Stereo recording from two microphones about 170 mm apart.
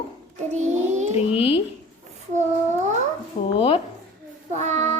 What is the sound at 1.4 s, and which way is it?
Speech, 35° left (ahead or behind).